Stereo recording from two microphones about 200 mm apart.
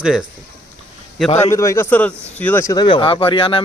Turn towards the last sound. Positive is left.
turn(degrees=25)  # may be behind; listen again after turning